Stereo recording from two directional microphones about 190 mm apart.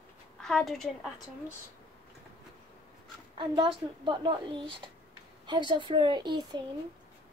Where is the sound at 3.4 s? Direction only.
30° right (ahead or behind).